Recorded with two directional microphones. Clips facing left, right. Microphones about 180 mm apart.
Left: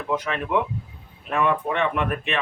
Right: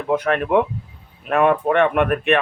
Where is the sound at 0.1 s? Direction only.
60° right (ahead or behind).